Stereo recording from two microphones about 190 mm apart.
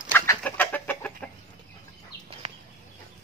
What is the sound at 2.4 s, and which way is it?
Chicken, 30° right (ahead or behind).